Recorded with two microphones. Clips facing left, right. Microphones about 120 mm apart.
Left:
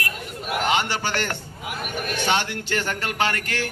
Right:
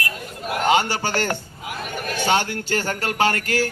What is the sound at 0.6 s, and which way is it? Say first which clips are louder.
Speech: right 5 dB; 40° right (ahead or behind).